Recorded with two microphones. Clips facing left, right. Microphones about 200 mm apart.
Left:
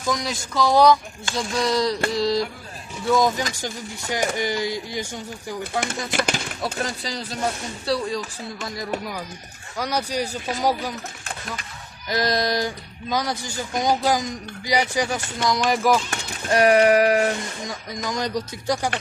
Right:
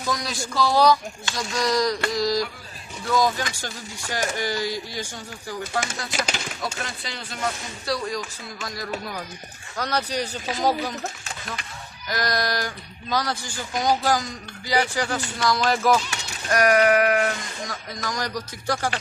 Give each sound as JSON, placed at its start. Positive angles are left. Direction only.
{"t": 0.1, "sound": "speech", "side_deg": 20}
{"t": 6.1, "sound": "speech", "side_deg": 55}
{"t": 6.8, "sound": "a sound", "side_deg": 35}
{"t": 7.9, "sound": "speech", "side_deg": 30}
{"t": 9.7, "sound": "speech", "side_deg": 10}
{"t": 12.0, "sound": "speech", "side_deg": 25}
{"t": 16.5, "sound": "speech", "side_deg": 30}